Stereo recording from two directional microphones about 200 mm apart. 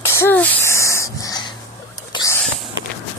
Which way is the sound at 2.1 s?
15° left (ahead or behind).